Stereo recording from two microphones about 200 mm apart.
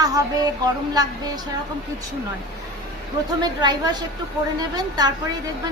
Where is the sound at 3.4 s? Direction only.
20° right (ahead or behind).